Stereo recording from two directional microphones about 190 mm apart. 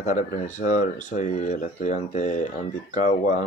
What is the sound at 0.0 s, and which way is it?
Speech, 40° left (ahead or behind).